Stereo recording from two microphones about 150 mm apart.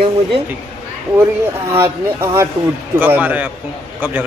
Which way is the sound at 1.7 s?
15° right (ahead or behind).